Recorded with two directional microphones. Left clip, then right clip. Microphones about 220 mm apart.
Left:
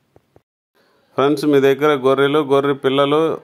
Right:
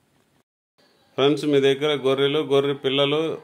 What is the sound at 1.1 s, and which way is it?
Speech, 25° left (ahead or behind).